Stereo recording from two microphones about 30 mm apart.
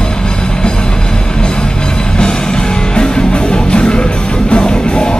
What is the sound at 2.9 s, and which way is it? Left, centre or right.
Music, left.